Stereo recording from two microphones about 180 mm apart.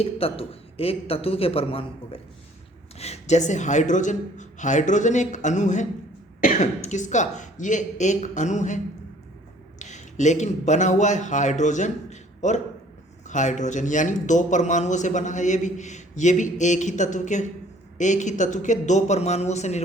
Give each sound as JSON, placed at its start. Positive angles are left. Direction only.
{"t": 0.0, "sound": "a man's voice", "side_deg": 30}